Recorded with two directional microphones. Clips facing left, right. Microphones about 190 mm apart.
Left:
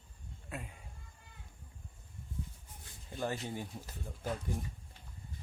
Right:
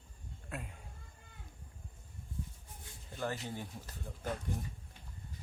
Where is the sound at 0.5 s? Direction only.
Centre (ahead or behind).